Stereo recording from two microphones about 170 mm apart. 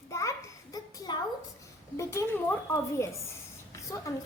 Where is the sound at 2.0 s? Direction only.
15° left (ahead or behind).